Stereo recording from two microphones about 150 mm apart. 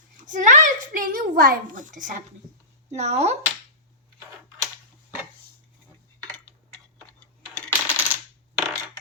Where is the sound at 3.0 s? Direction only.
45° right (ahead or behind).